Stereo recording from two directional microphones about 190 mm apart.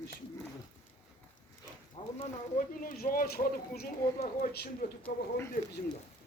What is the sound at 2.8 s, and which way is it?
Speech, 45° left (ahead or behind).